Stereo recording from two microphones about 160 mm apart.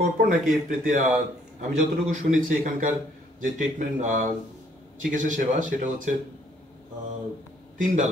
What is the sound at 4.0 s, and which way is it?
Speech, 50° right (ahead or behind).